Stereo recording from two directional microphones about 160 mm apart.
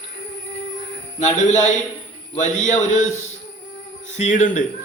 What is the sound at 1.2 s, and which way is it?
A man's voice, 45° left (ahead or behind).